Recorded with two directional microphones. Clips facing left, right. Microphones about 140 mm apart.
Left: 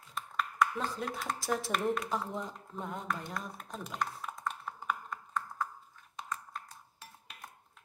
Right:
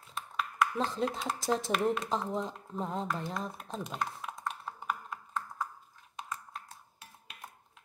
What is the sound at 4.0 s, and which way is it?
Music, 5° right (ahead or behind).